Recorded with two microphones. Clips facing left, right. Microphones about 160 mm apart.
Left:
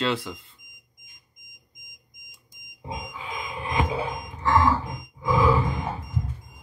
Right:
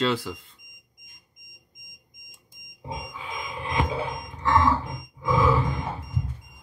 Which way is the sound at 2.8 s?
10° left (ahead or behind).